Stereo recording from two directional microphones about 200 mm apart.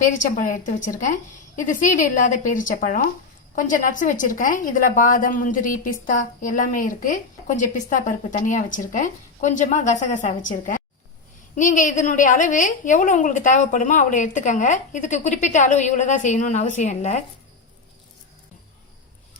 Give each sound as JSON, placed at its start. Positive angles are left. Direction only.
{"t": 0.0, "sound": "a woman's voice", "side_deg": 40}